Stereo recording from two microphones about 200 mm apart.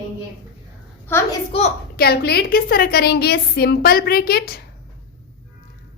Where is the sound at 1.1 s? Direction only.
10° left (ahead or behind).